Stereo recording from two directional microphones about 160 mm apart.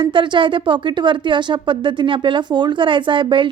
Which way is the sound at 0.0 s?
30° right (ahead or behind).